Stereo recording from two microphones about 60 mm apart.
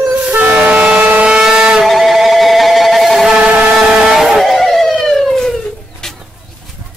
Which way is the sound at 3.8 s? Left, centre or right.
Centre.